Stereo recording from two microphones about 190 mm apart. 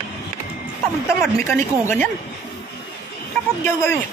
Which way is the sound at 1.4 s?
15° left (ahead or behind).